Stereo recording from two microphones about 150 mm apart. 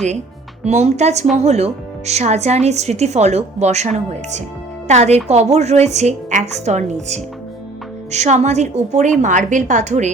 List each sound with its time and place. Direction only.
0.6 s speech: 50° right (ahead or behind)